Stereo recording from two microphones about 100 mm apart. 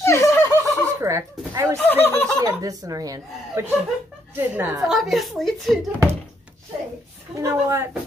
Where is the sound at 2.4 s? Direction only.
35° right (ahead or behind).